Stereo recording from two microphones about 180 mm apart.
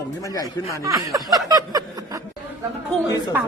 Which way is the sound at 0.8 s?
20° right (ahead or behind).